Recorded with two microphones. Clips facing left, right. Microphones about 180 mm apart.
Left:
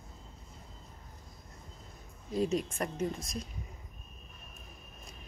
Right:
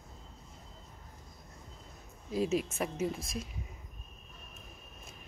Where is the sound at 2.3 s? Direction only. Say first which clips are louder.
Even; 5° right (ahead or behind).